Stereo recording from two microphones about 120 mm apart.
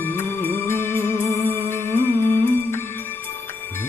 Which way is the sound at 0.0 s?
20° left (ahead or behind).